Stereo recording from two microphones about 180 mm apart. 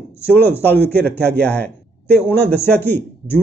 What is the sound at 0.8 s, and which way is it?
Speech, 65° right (ahead or behind).